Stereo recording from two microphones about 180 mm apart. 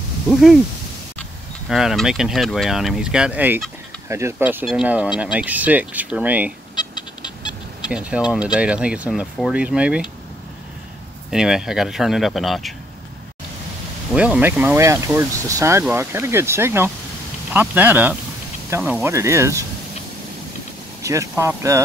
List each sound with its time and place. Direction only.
0.3 s speech: centre (ahead or behind)
1.7 s speech: centre (ahead or behind)
6.7 s a sound: 25° left (ahead or behind)
7.9 s speech: 5° right (ahead or behind)
11.2 s speech: 5° right (ahead or behind)
14.1 s speech: 5° right (ahead or behind)
21.0 s speech: 15° right (ahead or behind)